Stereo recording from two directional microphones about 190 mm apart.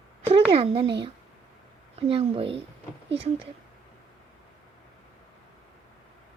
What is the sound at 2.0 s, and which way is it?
A woman's voice, 30° right (ahead or behind).